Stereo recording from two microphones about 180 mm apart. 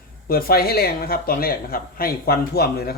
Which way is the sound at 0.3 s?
55° left (ahead or behind).